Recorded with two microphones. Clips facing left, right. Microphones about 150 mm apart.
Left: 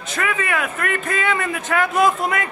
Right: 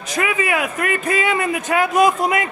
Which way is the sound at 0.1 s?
15° right (ahead or behind).